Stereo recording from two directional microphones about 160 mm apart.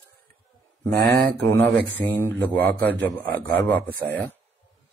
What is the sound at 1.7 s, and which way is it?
Speech, 10° left (ahead or behind).